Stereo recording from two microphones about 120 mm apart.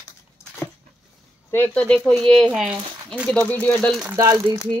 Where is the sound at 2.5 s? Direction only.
10° right (ahead or behind).